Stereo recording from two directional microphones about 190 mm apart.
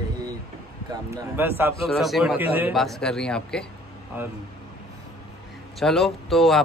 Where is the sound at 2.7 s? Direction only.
Centre (ahead or behind).